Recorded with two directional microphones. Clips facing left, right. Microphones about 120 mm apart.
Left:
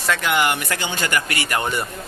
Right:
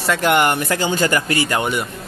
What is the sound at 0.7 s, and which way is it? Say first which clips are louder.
Speech: right 6 dB; 40° right (ahead or behind).